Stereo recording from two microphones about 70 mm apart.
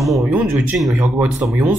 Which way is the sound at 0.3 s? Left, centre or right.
Right.